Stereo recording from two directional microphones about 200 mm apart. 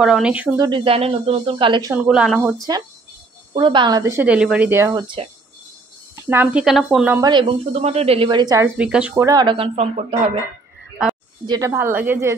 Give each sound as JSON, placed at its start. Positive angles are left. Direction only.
{"t": 0.0, "sound": "speech", "side_deg": -5}
{"t": 0.6, "sound": "speech", "side_deg": -25}
{"t": 2.0, "sound": "speech", "side_deg": -5}
{"t": 3.5, "sound": "speech", "side_deg": -25}
{"t": 6.2, "sound": "speech", "side_deg": -10}
{"t": 7.2, "sound": "speech", "side_deg": -20}
{"t": 8.7, "sound": "speech", "side_deg": -5}
{"t": 9.1, "sound": "speech", "side_deg": -20}
{"t": 11.4, "sound": "speech", "side_deg": -20}